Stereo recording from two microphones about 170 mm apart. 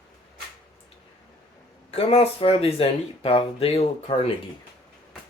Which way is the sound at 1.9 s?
35° left (ahead or behind).